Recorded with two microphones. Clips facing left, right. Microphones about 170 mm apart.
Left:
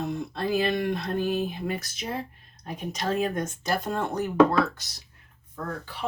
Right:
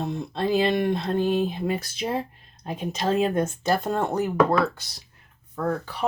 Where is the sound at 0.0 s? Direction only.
25° right (ahead or behind).